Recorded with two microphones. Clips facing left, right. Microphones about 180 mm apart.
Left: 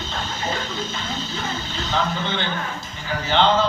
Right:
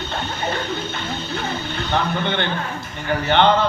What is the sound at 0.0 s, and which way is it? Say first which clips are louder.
Music: right 3 dB; 60° right (ahead or behind).